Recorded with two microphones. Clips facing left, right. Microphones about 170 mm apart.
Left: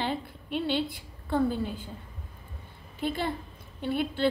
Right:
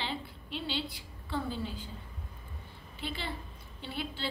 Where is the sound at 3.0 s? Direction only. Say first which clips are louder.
Left 9 dB; 50° left (ahead or behind).